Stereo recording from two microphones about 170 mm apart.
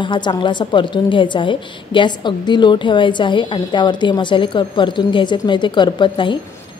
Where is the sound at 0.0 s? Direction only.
25° left (ahead or behind).